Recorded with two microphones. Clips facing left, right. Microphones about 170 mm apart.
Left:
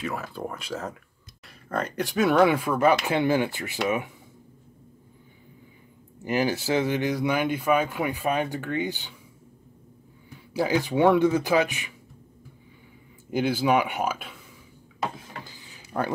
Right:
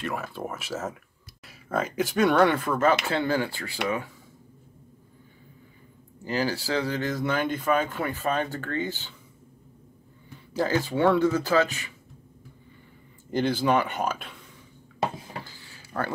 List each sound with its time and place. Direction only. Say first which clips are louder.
0.0 s speech: even; centre (ahead or behind); by 4.1 s 20° left (ahead or behind)
6.2 s speech: left 3 dB; 20° left (ahead or behind)
10.5 s speech: left 1 dB; 15° left (ahead or behind)
13.3 s speech: left 1 dB; 10° left (ahead or behind)
15.4 s a sound: left 1 dB; 15° left (ahead or behind)